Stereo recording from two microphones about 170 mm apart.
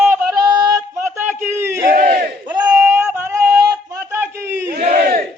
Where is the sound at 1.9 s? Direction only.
55° right (ahead or behind).